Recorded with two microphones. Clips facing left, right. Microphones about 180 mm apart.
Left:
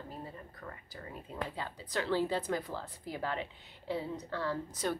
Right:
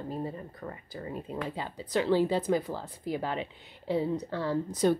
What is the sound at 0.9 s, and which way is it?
Speech, 20° right (ahead or behind).